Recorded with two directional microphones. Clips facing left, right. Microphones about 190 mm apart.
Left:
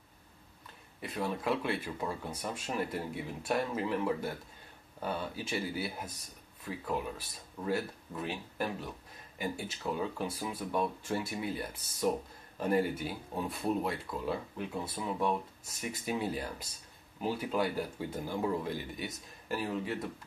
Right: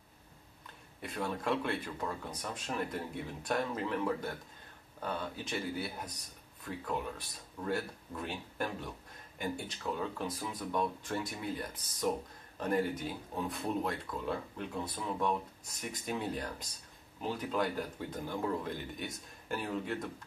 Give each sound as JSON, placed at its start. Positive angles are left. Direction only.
{"t": 1.0, "sound": "speech", "side_deg": 5}